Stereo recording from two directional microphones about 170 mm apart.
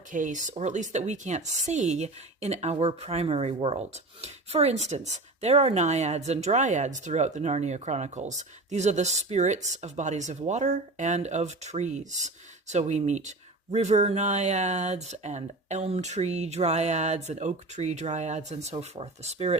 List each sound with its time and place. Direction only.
0.1 s a woman's voice: 50° right (ahead or behind)